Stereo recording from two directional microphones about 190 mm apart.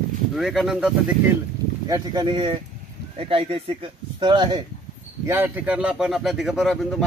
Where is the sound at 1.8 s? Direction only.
20° right (ahead or behind).